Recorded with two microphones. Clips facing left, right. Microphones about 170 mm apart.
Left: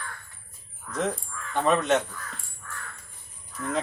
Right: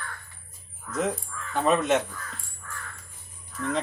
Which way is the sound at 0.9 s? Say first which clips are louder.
Right 1 dB; 5° right (ahead or behind).